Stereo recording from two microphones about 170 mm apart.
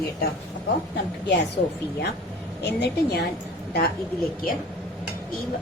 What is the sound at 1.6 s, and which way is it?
A woman's voice, 70° left (ahead or behind).